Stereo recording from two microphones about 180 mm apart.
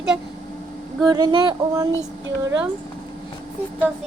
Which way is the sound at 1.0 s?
20° right (ahead or behind).